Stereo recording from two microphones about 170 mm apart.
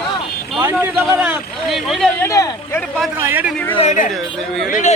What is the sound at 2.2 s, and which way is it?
Speech, 15° left (ahead or behind).